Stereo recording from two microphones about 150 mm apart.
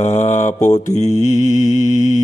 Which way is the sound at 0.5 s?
20° left (ahead or behind).